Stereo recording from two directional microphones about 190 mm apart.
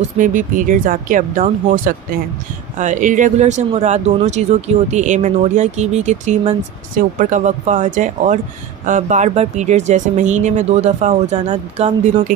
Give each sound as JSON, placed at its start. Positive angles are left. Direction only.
{"t": 0.0, "sound": "speech", "side_deg": -45}